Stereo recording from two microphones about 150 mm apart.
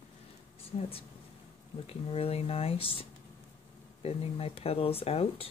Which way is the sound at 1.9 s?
40° left (ahead or behind).